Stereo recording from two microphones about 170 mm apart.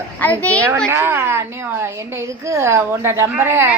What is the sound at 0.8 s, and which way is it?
A woman's voice, 15° right (ahead or behind).